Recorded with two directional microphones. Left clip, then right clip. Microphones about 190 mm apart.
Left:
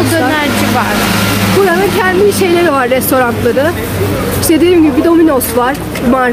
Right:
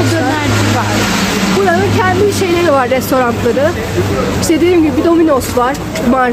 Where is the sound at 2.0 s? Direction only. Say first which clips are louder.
Left 2 dB; 5° left (ahead or behind).